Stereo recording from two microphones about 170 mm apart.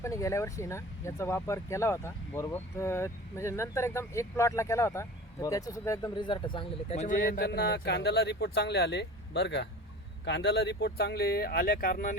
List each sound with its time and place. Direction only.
0.0 s speech: 20° left (ahead or behind); by 12.1 s 55° left (ahead or behind)